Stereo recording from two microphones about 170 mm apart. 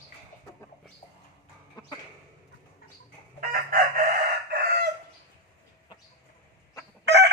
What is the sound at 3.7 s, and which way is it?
Chicken, 60° right (ahead or behind).